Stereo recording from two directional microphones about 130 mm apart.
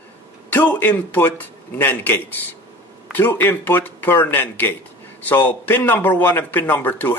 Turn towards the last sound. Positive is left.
turn(degrees=15)  # may be behind; listen again after turning